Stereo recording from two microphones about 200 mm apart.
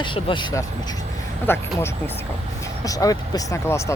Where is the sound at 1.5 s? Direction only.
10° left (ahead or behind).